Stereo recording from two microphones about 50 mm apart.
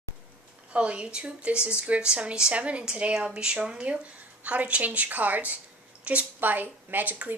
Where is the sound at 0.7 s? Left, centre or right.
Right.